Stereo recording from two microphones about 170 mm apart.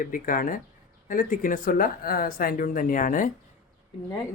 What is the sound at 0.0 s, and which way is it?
Speech, 55° left (ahead or behind).